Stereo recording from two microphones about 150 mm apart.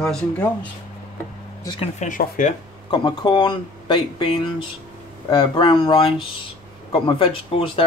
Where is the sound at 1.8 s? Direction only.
55° left (ahead or behind).